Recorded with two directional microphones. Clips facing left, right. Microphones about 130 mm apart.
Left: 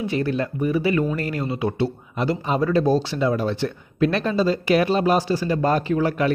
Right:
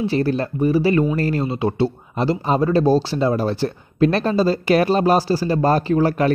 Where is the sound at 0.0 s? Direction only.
35° right (ahead or behind).